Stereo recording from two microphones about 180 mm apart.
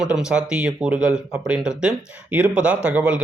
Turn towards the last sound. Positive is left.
turn(degrees=-5)  # may be behind; listen again after turning